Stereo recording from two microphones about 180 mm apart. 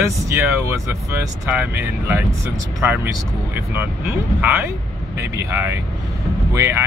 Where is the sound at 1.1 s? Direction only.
10° right (ahead or behind).